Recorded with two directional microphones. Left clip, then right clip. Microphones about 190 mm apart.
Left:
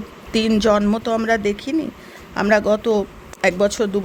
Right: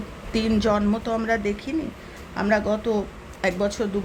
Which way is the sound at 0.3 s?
35° left (ahead or behind).